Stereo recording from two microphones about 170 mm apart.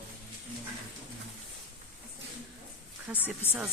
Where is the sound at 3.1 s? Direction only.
5° right (ahead or behind).